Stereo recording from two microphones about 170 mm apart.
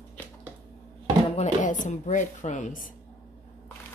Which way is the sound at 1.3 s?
45° left (ahead or behind).